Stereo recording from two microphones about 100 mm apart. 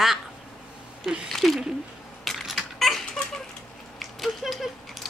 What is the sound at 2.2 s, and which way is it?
Mechanisms, centre (ahead or behind).